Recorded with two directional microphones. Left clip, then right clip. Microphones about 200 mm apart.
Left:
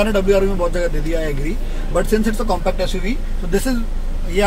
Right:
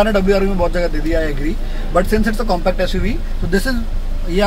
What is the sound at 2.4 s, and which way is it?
Speech, 25° right (ahead or behind).